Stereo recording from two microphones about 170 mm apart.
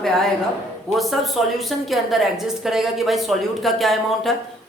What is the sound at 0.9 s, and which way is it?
A woman's voice, centre (ahead or behind).